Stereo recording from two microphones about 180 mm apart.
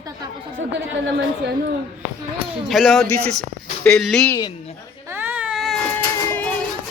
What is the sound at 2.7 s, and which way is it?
Speech, centre (ahead or behind).